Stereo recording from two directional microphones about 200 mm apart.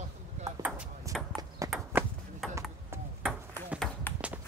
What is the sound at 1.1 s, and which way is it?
Horse, 15° right (ahead or behind).